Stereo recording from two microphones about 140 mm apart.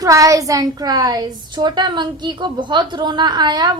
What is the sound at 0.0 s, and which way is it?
A woman's voice, 25° right (ahead or behind).